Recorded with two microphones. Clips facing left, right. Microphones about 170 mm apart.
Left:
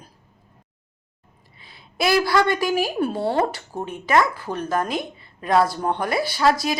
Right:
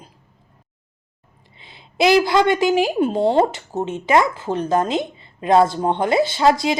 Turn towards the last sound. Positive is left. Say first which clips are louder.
# right 4 dB
turn(degrees=-20)  # may be behind; listen again after turning